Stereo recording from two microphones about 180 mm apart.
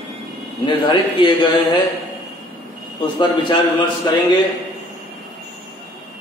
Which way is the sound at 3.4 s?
25° left (ahead or behind).